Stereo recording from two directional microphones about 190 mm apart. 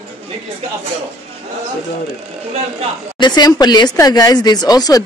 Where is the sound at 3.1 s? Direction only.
25° left (ahead or behind).